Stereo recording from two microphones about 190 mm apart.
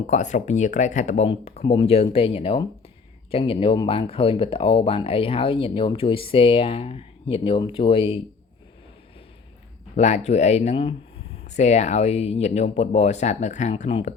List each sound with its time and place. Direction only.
0.1 s speech: 40° left (ahead or behind)
9.9 s speech: 35° left (ahead or behind)